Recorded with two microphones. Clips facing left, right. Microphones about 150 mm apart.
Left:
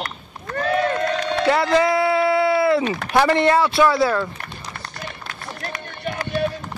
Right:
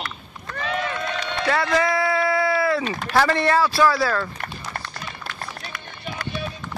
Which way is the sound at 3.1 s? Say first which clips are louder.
Left 3 dB; 20° left (ahead or behind).